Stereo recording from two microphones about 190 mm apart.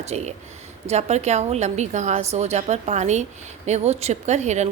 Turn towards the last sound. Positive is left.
turn(degrees=-35)  # may be behind; listen again after turning